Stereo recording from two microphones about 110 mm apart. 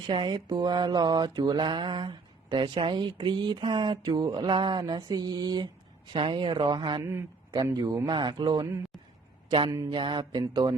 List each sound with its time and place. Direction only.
0.1 s mantra: 45° right (ahead or behind)
6.1 s speech: 50° right (ahead or behind)
7.0 s a man's voice: 25° right (ahead or behind)
7.5 s mantra: 40° right (ahead or behind)
9.9 s speech: 45° right (ahead or behind)
10.4 s mantra: 35° right (ahead or behind)